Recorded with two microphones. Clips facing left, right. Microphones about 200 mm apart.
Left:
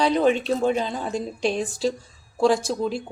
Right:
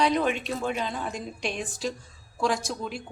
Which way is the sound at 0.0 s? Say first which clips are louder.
Left 5 dB; 30° left (ahead or behind).